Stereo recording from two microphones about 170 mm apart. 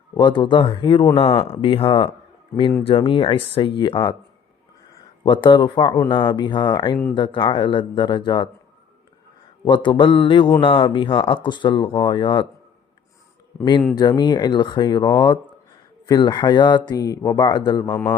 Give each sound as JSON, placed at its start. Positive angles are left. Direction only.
{"t": 0.1, "sound": "speech", "side_deg": 25}
{"t": 5.2, "sound": "speech", "side_deg": 30}
{"t": 9.6, "sound": "speech", "side_deg": 30}
{"t": 13.9, "sound": "speech", "side_deg": 25}